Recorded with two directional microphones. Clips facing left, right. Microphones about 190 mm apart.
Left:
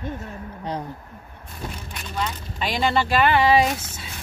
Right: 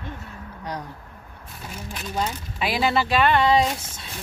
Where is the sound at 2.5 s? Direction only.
5° right (ahead or behind).